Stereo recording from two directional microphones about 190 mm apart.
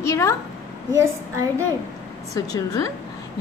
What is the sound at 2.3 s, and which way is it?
Speech, 20° left (ahead or behind).